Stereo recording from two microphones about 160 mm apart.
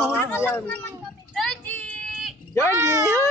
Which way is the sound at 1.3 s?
5° left (ahead or behind).